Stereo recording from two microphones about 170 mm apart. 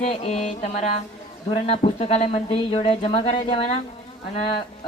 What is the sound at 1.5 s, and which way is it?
Speech, 35° left (ahead or behind).